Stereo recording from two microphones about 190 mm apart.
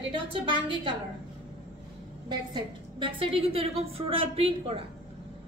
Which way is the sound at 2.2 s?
25° right (ahead or behind).